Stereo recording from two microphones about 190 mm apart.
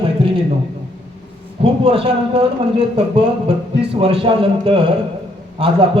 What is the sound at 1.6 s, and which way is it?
Speech, 30° right (ahead or behind).